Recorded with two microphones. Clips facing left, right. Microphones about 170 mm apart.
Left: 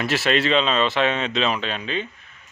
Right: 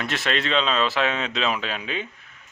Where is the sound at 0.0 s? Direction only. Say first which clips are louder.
Left 5 dB; 5° left (ahead or behind).